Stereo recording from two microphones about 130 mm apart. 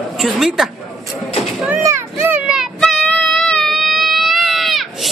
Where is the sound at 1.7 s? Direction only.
15° right (ahead or behind).